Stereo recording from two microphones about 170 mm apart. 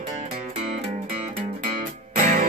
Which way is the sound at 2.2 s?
45° right (ahead or behind).